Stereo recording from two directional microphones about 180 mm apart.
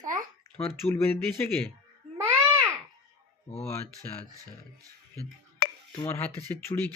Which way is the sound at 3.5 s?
35° left (ahead or behind).